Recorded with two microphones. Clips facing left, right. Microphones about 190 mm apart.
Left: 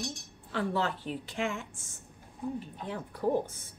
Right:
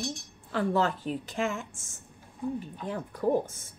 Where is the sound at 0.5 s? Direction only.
45° right (ahead or behind).